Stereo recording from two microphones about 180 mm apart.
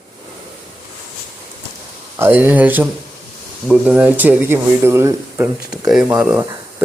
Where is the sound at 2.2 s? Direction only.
10° right (ahead or behind).